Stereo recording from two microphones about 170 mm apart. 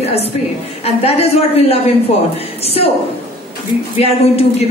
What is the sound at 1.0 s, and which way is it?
Speech, 40° left (ahead or behind).